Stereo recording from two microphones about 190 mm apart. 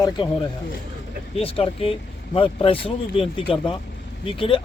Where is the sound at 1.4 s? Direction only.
30° left (ahead or behind).